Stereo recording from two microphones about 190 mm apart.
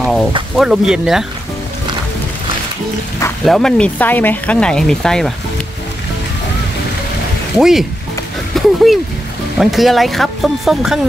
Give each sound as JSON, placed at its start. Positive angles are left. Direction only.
{"t": 0.6, "sound": "speech", "side_deg": -5}
{"t": 3.4, "sound": "speech", "side_deg": 0}
{"t": 7.5, "sound": "speech", "side_deg": 0}